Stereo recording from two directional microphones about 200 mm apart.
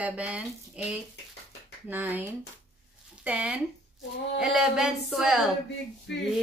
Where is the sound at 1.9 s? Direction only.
10° right (ahead or behind).